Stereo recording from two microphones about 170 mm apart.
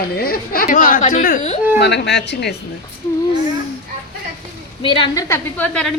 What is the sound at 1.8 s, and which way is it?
Speech, 90° left.